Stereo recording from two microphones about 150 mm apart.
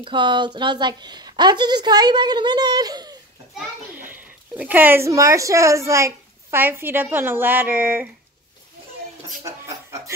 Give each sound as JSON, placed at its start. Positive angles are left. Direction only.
{"t": 0.0, "sound": "a woman's voice", "side_deg": -30}
{"t": 3.5, "sound": "a child's voice", "side_deg": -10}
{"t": 9.4, "sound": "music", "side_deg": -20}